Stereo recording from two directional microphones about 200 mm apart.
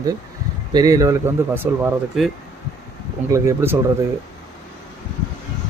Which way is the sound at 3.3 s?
15° right (ahead or behind).